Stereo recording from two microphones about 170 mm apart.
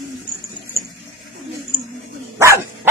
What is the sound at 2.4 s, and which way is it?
Speech, 15° right (ahead or behind).